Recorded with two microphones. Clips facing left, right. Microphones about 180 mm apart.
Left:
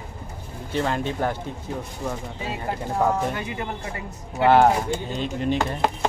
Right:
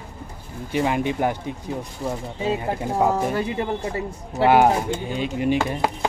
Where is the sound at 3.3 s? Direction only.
35° right (ahead or behind).